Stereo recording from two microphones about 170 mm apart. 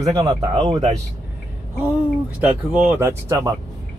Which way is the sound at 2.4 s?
10° right (ahead or behind).